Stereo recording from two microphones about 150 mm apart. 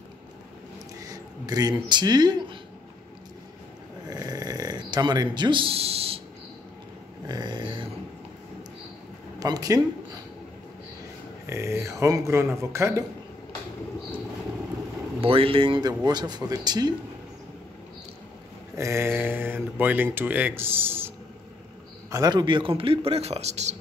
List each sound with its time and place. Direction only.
1.0 s speech: 25° right (ahead or behind)
4.1 s snoring: 25° right (ahead or behind); by 6.2 s 40° right (ahead or behind)
7.2 s a sound: 30° right (ahead or behind)
9.4 s speech: 25° right (ahead or behind)
11.4 s speech: 20° right (ahead or behind)
15.1 s speech: 35° right (ahead or behind)
18.8 s speech: 20° right (ahead or behind)
22.1 s speech: 25° right (ahead or behind); by 23.8 s 50° right (ahead or behind)